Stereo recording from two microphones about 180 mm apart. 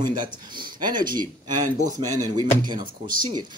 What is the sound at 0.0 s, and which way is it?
Speech, 25° right (ahead or behind).